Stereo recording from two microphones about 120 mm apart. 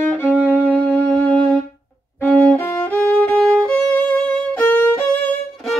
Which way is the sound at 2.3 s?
10° left (ahead or behind).